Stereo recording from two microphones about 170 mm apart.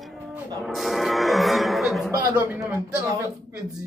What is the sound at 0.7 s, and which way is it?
Music, centre (ahead or behind).